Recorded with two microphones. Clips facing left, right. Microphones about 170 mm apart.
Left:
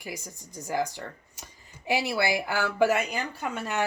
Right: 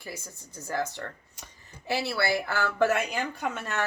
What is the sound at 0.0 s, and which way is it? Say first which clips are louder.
Speech: left 2 dB; 15° left (ahead or behind).